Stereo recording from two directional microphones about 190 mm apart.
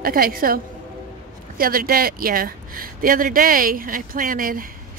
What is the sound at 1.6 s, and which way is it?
Speech, 50° right (ahead or behind).